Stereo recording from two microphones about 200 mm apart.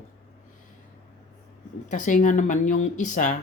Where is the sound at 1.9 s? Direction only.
40° left (ahead or behind).